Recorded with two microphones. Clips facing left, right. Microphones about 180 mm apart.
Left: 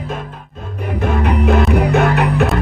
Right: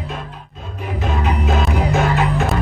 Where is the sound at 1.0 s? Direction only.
60° left (ahead or behind).